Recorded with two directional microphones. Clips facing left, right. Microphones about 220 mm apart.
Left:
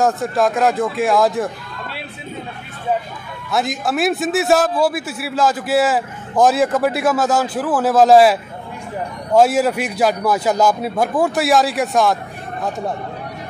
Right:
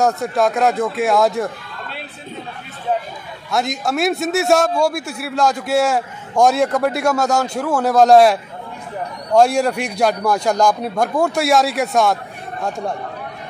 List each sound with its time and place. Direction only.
0.0 s a man's voice: centre (ahead or behind)
3.4 s a man's voice: centre (ahead or behind)